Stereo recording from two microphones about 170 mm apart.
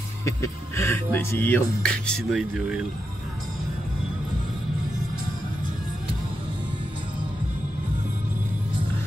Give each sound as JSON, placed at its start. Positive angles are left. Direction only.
{"t": 0.2, "sound": "speech", "side_deg": 15}